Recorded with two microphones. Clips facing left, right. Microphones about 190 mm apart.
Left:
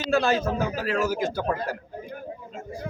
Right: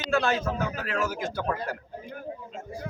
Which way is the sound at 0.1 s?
35° left (ahead or behind).